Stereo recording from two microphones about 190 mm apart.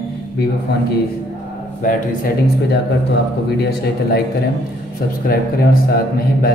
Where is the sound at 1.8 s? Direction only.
45° left (ahead or behind).